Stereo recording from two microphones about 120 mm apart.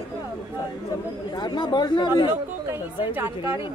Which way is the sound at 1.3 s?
35° left (ahead or behind).